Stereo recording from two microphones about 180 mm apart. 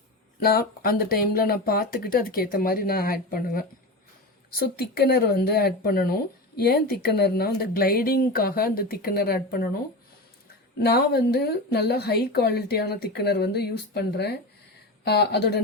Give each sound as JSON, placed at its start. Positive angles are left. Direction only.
{"t": 0.3, "sound": "a woman's voice", "side_deg": 55}
{"t": 10.8, "sound": "a woman's voice", "side_deg": 60}